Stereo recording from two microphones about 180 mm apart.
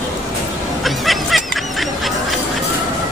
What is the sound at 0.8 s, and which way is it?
Snicker, centre (ahead or behind).